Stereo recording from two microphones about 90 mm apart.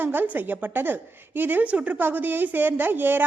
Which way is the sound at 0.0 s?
20° right (ahead or behind).